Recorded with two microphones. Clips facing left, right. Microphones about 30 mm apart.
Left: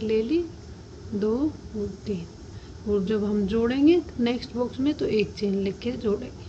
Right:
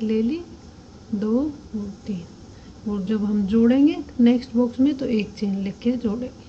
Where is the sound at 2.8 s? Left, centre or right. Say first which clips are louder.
Left 3 dB; right.